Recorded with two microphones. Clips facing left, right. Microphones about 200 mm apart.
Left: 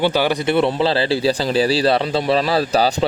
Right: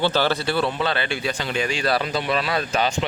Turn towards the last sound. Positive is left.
turn(degrees=35)  # may be behind; listen again after turning